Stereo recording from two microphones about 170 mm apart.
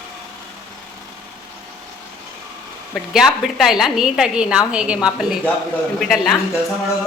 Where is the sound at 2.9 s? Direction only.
5° right (ahead or behind).